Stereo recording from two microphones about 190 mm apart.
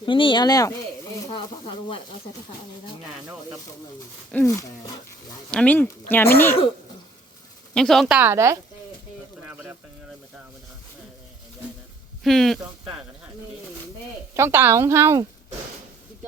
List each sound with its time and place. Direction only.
0.0 s speech: 25° left (ahead or behind)
4.3 s speech: 10° left (ahead or behind)
7.7 s speech: centre (ahead or behind); by 8.5 s 15° right (ahead or behind)
12.2 s speech: centre (ahead or behind)
14.3 s a woman's voice: 10° right (ahead or behind)